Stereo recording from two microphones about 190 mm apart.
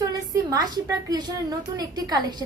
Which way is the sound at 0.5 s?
20° right (ahead or behind).